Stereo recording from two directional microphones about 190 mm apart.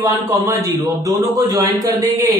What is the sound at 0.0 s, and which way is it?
A man's voice, 20° right (ahead or behind).